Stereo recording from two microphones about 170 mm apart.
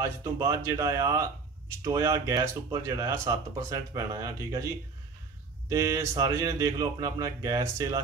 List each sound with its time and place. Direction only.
0.0 s speech: 15° right (ahead or behind)
5.7 s speech: 20° right (ahead or behind)